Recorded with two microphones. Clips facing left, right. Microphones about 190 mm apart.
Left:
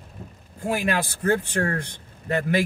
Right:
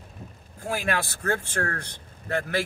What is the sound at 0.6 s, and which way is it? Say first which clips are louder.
Speech: left 3 dB; 20° left (ahead or behind).